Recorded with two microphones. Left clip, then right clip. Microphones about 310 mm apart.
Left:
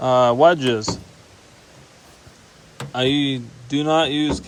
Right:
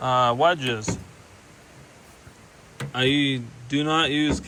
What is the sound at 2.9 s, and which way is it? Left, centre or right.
Speech, centre.